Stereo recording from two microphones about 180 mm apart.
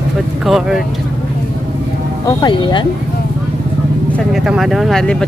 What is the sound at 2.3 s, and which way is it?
Speech, 25° left (ahead or behind).